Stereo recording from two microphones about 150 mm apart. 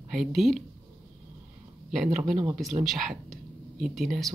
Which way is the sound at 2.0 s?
60° right (ahead or behind).